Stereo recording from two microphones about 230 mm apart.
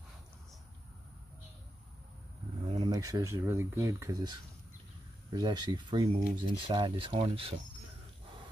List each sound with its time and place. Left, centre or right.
2.7 s speech: centre